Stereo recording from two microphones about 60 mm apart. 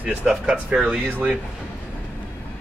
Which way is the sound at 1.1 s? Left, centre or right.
Right.